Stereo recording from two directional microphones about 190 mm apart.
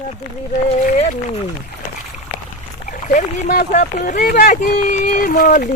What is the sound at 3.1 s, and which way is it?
Speech, 45° left (ahead or behind).